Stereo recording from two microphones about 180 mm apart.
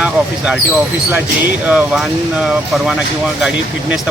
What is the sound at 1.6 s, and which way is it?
Speech, centre (ahead or behind).